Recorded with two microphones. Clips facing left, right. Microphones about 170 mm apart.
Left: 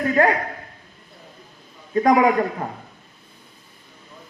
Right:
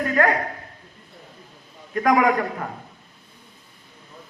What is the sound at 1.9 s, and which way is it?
Speech, 25° left (ahead or behind).